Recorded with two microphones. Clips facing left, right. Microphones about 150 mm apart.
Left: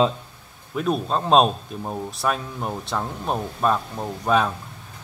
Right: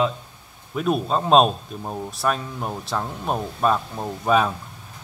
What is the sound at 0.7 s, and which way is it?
A man's voice, 5° right (ahead or behind).